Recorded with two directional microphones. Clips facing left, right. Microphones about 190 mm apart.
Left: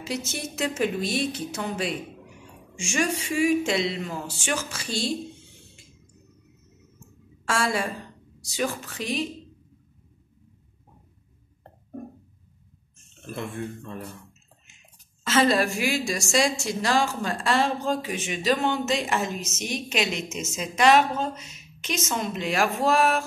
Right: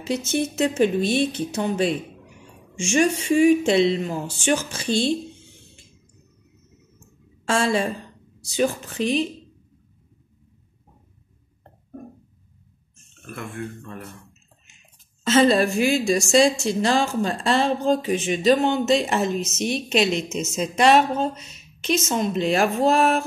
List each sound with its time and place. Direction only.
0.0 s a woman's voice: 25° right (ahead or behind)
7.4 s a woman's voice: 25° right (ahead or behind)
13.3 s speech: 25° left (ahead or behind)
15.2 s a woman's voice: 30° right (ahead or behind)